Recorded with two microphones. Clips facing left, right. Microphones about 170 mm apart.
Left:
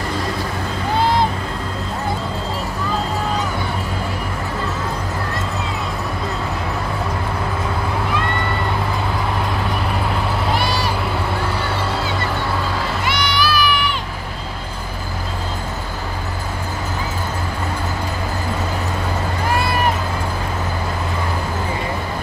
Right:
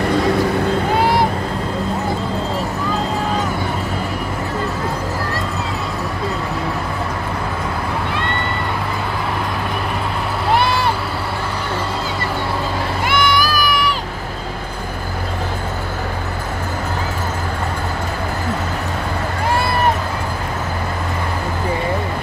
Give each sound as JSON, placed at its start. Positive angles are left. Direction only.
{"t": 13.0, "sound": "crowd", "side_deg": -50}